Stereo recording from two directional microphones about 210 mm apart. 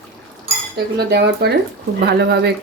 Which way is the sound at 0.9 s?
50° right (ahead or behind).